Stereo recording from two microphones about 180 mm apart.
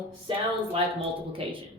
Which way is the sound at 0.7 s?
30° right (ahead or behind).